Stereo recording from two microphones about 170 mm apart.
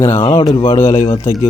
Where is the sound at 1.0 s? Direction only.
30° left (ahead or behind).